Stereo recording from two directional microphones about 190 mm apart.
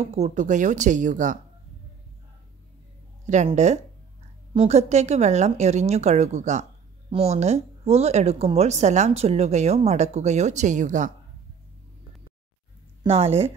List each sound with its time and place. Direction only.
0.0 s speech: 35° right (ahead or behind)
3.3 s speech: 40° right (ahead or behind)
13.0 s speech: 30° right (ahead or behind)